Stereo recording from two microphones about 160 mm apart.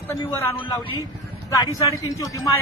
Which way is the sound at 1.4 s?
25° left (ahead or behind).